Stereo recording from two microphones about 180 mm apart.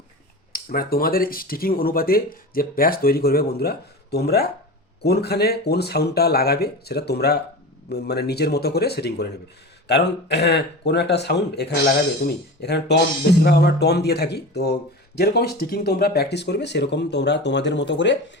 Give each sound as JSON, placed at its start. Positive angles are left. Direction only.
{"t": 0.5, "sound": "speech", "side_deg": 55}